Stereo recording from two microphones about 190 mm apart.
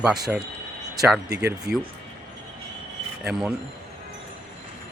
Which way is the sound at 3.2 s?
Centre (ahead or behind).